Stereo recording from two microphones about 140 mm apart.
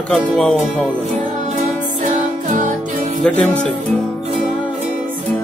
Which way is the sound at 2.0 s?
60° right (ahead or behind).